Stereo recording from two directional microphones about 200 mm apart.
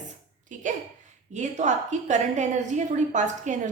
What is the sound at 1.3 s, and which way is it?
A woman's voice, 35° right (ahead or behind).